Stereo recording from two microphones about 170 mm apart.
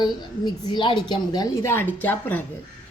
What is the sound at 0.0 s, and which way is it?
A woman's voice, 25° left (ahead or behind).